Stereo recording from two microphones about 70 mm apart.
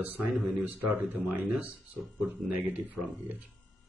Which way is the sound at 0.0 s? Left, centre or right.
Right.